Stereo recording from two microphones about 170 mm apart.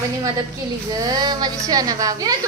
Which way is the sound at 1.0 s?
25° right (ahead or behind).